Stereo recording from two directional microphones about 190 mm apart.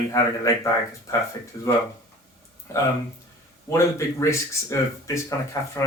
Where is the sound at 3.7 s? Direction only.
15° left (ahead or behind).